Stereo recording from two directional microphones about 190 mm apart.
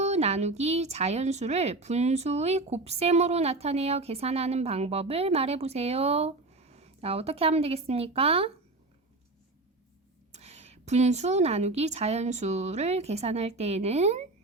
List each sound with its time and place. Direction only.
0.0 s speech: 35° right (ahead or behind)
10.3 s speech: 35° right (ahead or behind)